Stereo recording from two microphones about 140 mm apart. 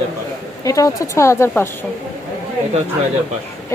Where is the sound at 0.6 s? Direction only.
25° left (ahead or behind).